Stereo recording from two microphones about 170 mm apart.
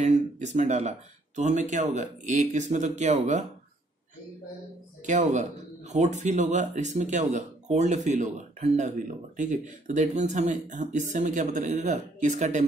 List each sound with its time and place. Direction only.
0.0 s speech: 45° right (ahead or behind)
5.0 s speech: 45° right (ahead or behind)